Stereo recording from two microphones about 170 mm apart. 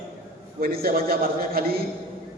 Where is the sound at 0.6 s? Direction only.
60° right (ahead or behind).